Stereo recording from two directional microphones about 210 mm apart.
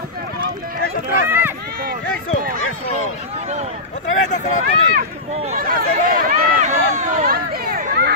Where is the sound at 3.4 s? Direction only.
30° right (ahead or behind).